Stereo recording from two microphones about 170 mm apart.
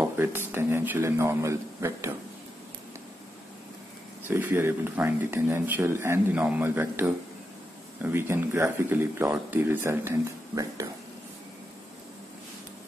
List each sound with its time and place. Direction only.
0.0 s a sound: 10° right (ahead or behind)
0.5 s speech: 15° right (ahead or behind)
4.3 s speech: 15° right (ahead or behind)